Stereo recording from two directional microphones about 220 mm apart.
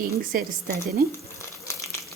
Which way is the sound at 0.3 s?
40° right (ahead or behind).